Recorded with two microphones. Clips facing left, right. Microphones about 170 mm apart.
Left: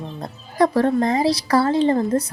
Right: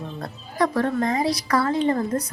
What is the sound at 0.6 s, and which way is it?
A woman's voice, 35° left (ahead or behind).